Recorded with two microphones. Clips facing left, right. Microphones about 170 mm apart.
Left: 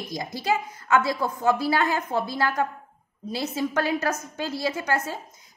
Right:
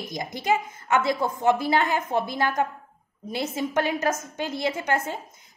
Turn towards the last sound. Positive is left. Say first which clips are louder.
# right 1 dB
turn(degrees=-25)  # may be behind; listen again after turning